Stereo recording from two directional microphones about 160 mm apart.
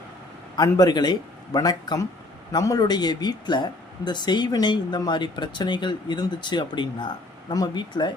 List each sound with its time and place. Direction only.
0.5 s speech: 25° left (ahead or behind)